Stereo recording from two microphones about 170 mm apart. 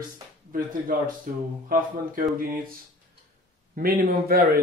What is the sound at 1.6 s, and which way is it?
Speech, 55° right (ahead or behind).